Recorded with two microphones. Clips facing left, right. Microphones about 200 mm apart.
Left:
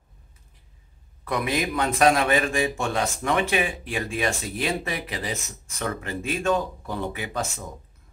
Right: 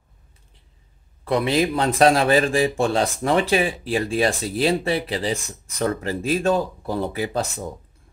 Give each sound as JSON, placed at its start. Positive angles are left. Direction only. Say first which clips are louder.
{"t": 1.2, "sound": "a man's voice", "louder": "right 6 dB", "side_deg": -30}